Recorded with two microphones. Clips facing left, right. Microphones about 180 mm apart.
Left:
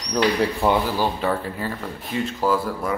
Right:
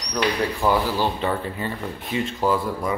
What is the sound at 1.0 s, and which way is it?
Speech, 5° left (ahead or behind).